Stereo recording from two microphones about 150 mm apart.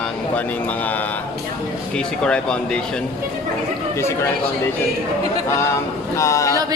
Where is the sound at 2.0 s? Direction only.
5° left (ahead or behind).